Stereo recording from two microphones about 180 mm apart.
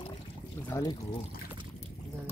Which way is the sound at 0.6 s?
15° left (ahead or behind).